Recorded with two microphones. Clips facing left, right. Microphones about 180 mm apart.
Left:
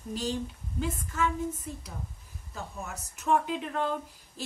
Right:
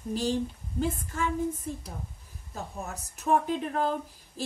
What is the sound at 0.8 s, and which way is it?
Speech, 35° right (ahead or behind).